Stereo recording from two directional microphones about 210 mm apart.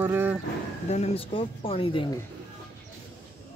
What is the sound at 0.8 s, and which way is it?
Speech, 30° left (ahead or behind).